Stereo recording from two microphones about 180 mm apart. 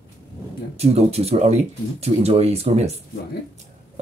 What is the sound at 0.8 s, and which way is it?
Speech, 35° right (ahead or behind).